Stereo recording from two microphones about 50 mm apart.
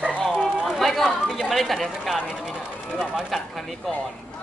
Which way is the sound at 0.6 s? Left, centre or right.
Centre.